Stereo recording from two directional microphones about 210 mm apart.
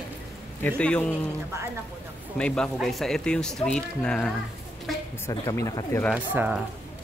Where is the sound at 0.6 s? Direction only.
5° left (ahead or behind).